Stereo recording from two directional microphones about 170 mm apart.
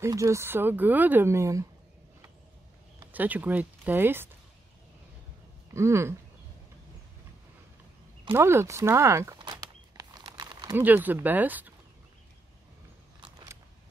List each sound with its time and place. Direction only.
0.0 s speech: 20° right (ahead or behind)
3.1 s speech: 10° right (ahead or behind)
5.7 s speech: 15° right (ahead or behind)
8.3 s speech: 15° right (ahead or behind)
9.4 s a sound: 25° right (ahead or behind)
10.8 s speech: 10° right (ahead or behind)
13.2 s a sound: 20° right (ahead or behind)